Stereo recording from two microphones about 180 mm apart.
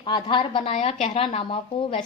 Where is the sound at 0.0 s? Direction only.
25° left (ahead or behind).